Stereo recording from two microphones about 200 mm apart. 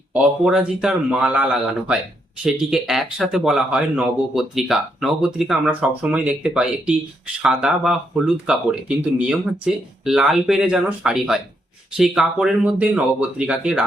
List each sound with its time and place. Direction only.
0.1 s speech: 5° right (ahead or behind)